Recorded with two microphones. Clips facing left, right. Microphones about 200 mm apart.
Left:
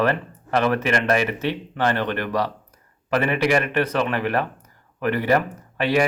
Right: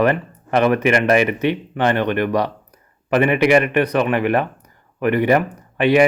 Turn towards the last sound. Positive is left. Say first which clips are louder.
# right 6 dB
turn(degrees=-15)  # may be behind; listen again after turning